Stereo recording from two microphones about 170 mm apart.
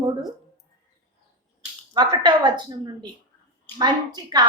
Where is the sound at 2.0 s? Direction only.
25° right (ahead or behind).